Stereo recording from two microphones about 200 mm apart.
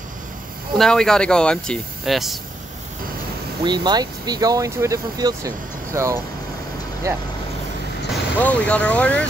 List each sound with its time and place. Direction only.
0.7 s speech: 5° left (ahead or behind)
3.6 s speech: 20° right (ahead or behind)
8.1 s speech: 5° left (ahead or behind)